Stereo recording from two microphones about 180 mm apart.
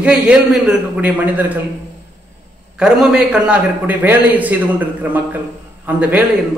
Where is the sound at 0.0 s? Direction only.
5° right (ahead or behind).